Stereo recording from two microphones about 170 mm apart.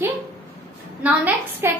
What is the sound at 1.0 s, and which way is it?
Speech, 10° right (ahead or behind).